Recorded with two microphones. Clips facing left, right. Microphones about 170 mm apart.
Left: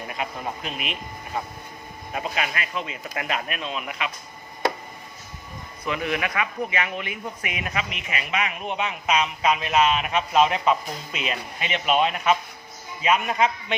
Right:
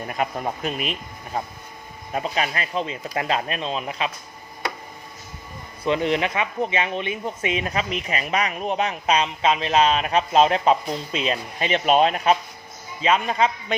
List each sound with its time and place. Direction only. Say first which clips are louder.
0.2 s speech: right 6 dB; 45° right (ahead or behind)
2.1 s speech: right 3 dB; 35° right (ahead or behind)
5.8 s a man's voice: right 5 dB; 30° right (ahead or behind)